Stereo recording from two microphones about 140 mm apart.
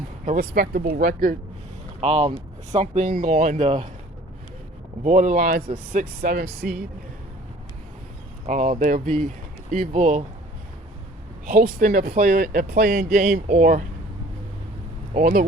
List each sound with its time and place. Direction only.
0.3 s speech: 90° right; by 1.4 s 75° right (ahead or behind)
2.0 s speech: 50° right (ahead or behind)
5.0 s speech: 65° right (ahead or behind)
6.6 s speech: 90° right
8.4 s speech: 65° right (ahead or behind)
11.4 s speech: 80° right; by 13.8 s 65° right (ahead or behind)
15.1 s speech: 80° right